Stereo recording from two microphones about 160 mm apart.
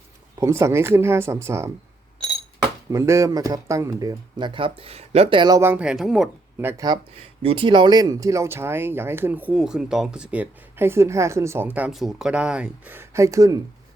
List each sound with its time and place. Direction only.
0.3 s speech: 20° right (ahead or behind)
2.9 s speech: 20° right (ahead or behind); by 6.7 s centre (ahead or behind)
6.7 s speech: 25° right (ahead or behind)
7.4 s speech: 35° right (ahead or behind)